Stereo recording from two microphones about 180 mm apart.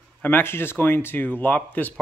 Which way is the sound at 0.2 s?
10° left (ahead or behind).